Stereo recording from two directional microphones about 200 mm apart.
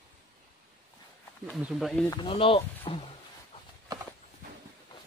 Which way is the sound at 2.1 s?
25° left (ahead or behind).